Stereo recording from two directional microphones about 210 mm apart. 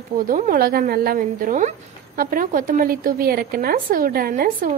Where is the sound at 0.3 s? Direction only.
40° right (ahead or behind).